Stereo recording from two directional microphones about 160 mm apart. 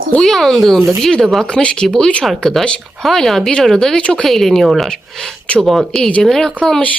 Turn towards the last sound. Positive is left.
turn(degrees=5)  # may be behind; listen again after turning